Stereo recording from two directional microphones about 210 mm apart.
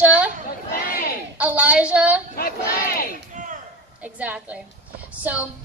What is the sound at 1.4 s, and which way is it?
Speech, 5° right (ahead or behind).